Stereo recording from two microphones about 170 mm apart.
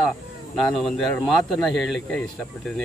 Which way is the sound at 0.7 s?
5° left (ahead or behind).